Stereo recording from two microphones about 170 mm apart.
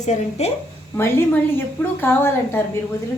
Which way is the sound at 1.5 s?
15° left (ahead or behind).